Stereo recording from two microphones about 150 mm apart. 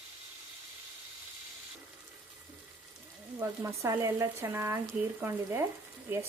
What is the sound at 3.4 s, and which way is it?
Speech, 20° right (ahead or behind).